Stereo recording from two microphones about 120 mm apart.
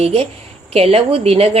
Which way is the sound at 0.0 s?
55° right (ahead or behind).